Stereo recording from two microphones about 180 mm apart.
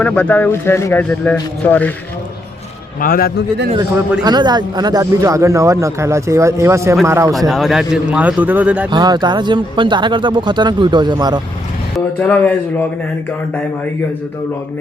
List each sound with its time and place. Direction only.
0.0 s a man's voice: 10° left (ahead or behind)
3.0 s a man's voice: 55° left (ahead or behind)
4.2 s speech: 25° right (ahead or behind)
7.3 s a man's voice: centre (ahead or behind)
8.9 s speech: 25° right (ahead or behind)
11.9 s a man's voice: 10° left (ahead or behind)